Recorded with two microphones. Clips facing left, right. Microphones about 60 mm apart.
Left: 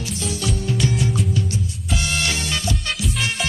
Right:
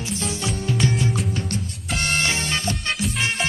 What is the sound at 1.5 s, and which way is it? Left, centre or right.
Music, right.